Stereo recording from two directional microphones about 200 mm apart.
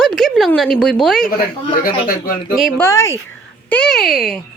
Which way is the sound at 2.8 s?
15° left (ahead or behind).